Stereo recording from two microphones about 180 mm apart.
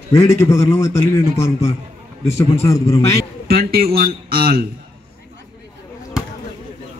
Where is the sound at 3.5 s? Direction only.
60° right (ahead or behind).